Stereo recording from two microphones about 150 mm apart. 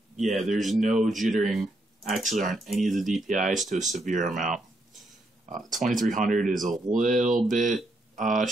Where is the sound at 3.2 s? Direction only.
60° right (ahead or behind).